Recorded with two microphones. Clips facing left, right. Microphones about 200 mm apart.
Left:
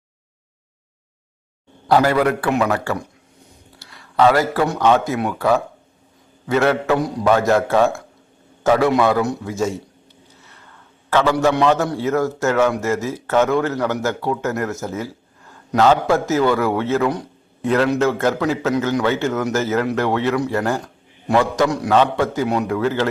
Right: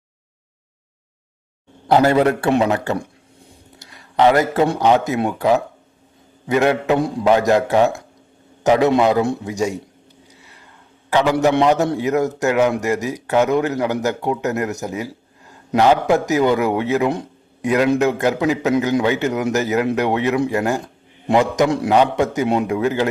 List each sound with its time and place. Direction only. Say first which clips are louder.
1.9 s a man's voice: right 2 dB; 20° right (ahead or behind)
11.1 s a man's voice: right 1 dB; 15° right (ahead or behind)